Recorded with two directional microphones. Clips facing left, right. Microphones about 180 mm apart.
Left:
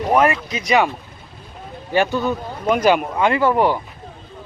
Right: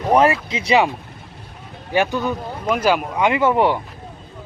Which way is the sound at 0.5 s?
30° right (ahead or behind).